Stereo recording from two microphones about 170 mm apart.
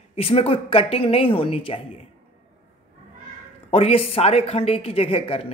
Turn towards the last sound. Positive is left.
turn(degrees=35)  # may be behind; listen again after turning